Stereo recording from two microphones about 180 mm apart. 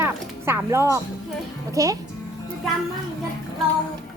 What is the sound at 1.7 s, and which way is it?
Speech, 20° right (ahead or behind).